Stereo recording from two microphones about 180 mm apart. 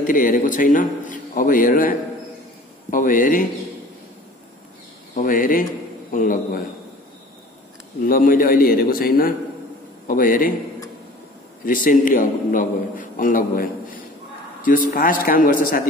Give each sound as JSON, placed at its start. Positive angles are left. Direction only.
{"t": 0.0, "sound": "a man's voice", "side_deg": 50}
{"t": 5.1, "sound": "a man's voice", "side_deg": 50}
{"t": 8.0, "sound": "a man's voice", "side_deg": 50}
{"t": 11.6, "sound": "a man's voice", "side_deg": 50}